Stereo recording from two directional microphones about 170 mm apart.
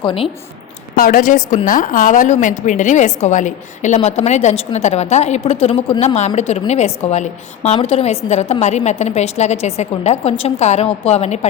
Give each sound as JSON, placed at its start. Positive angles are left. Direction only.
{"t": 0.0, "sound": "a woman's voice", "side_deg": 30}
{"t": 0.9, "sound": "a woman's voice", "side_deg": 55}